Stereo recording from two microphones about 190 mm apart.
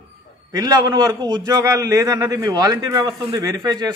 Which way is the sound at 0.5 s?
20° right (ahead or behind).